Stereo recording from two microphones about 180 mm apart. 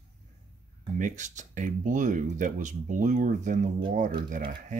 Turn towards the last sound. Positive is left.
turn(degrees=-50)  # may be behind; listen again after turning